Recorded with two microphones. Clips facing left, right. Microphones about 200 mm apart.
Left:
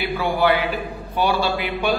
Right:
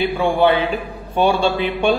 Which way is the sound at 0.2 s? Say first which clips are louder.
Right 3 dB; 25° right (ahead or behind).